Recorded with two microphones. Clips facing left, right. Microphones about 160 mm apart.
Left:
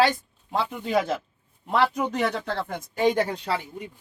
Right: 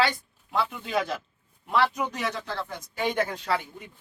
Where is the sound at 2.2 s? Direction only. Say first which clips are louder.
Left 5 dB; 60° left (ahead or behind).